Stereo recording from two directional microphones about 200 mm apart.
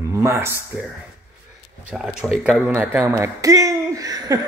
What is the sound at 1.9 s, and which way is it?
A man's voice, 5° right (ahead or behind).